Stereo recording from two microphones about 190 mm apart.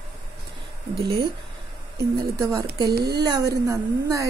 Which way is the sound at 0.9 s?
55° right (ahead or behind).